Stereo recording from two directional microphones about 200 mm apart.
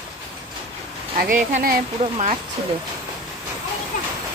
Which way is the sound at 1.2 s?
40° right (ahead or behind).